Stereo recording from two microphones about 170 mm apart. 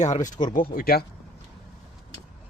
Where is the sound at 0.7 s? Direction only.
60° left (ahead or behind).